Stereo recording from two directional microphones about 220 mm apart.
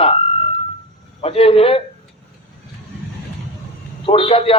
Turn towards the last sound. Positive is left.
turn(degrees=25)  # may be behind; listen again after turning